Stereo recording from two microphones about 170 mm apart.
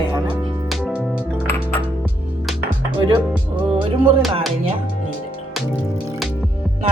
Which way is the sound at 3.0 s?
30° right (ahead or behind).